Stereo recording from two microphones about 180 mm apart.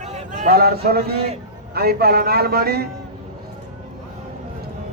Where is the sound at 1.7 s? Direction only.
60° right (ahead or behind).